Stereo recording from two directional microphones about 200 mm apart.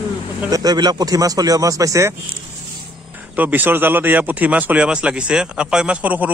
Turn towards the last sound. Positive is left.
turn(degrees=-5)  # may be behind; listen again after turning